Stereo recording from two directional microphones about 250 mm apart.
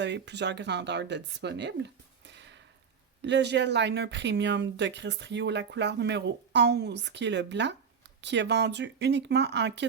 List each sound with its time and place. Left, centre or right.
0.0 s speech: right
2.3 s a sound: right
3.2 s speech: right